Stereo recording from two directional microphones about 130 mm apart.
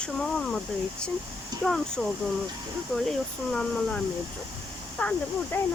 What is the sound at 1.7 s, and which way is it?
Speech, 5° left (ahead or behind).